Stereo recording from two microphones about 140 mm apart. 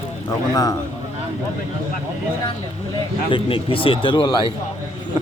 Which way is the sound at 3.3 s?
40° left (ahead or behind).